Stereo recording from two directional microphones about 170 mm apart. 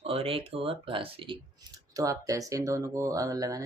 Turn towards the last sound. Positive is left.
turn(degrees=-20)  # may be behind; listen again after turning